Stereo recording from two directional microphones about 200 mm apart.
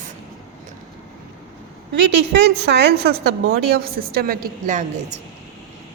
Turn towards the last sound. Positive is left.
turn(degrees=-35)  # may be behind; listen again after turning